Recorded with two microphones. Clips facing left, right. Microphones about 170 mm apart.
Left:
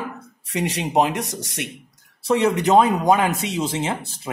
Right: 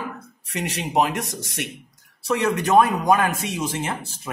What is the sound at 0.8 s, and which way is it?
Speech, 20° left (ahead or behind).